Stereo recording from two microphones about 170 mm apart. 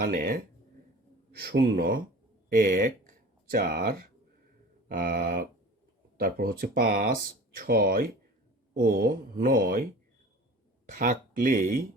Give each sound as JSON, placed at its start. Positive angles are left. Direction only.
{"t": 0.0, "sound": "speech", "side_deg": -60}
{"t": 1.4, "sound": "speech", "side_deg": -65}